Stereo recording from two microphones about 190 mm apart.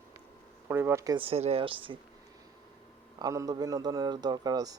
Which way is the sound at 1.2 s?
30° right (ahead or behind).